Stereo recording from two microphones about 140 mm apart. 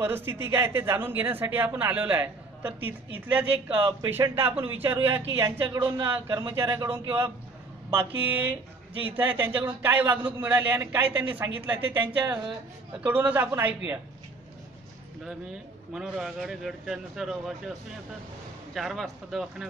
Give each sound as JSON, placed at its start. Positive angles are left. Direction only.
{"t": 0.0, "sound": "speech", "side_deg": -15}
{"t": 15.9, "sound": "speech", "side_deg": -5}